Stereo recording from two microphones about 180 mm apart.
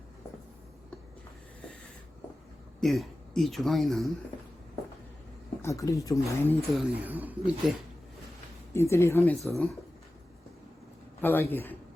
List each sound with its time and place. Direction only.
2.8 s speech: centre (ahead or behind)
5.6 s speech: 15° left (ahead or behind)
6.7 s speech: 10° right (ahead or behind)
8.7 s speech: 15° left (ahead or behind)
9.4 s speech: centre (ahead or behind)
11.2 s speech: 10° left (ahead or behind)